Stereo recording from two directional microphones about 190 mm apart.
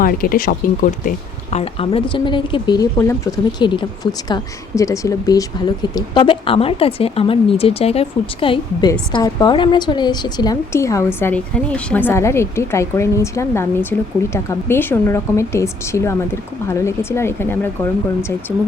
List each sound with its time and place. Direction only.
0.0 s speech: 50° left (ahead or behind)
1.5 s a woman's voice: 30° left (ahead or behind); by 18.3 s 15° left (ahead or behind)